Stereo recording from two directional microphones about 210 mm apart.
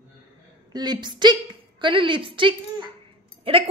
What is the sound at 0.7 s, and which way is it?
A woman's voice, 20° right (ahead or behind).